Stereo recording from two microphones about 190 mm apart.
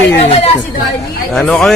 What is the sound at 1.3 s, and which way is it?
Speech, centre (ahead or behind).